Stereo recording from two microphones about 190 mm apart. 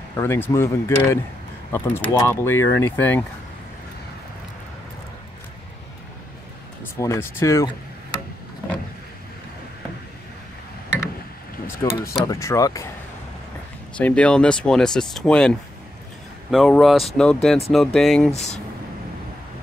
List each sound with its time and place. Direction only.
0.1 s speech: 15° left (ahead or behind)
6.8 s speech: 15° left (ahead or behind)
11.6 s speech: 15° left (ahead or behind)
13.9 s speech: 5° left (ahead or behind)